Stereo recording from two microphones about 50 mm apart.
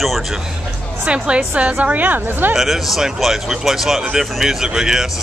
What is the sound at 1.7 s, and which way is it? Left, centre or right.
Speech, right.